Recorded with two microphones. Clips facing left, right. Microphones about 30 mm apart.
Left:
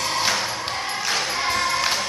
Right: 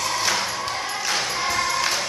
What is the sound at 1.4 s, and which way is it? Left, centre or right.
Music, left.